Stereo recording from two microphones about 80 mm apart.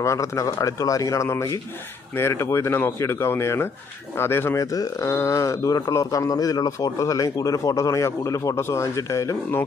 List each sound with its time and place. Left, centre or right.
0.0 s speech: left
4.6 s speech: left